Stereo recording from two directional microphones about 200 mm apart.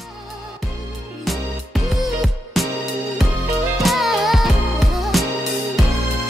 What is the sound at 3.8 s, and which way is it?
Music, centre (ahead or behind).